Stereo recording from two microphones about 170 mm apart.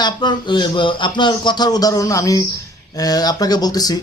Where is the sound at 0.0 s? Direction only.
25° left (ahead or behind).